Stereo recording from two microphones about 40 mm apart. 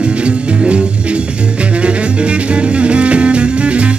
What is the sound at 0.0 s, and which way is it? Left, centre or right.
Music, right.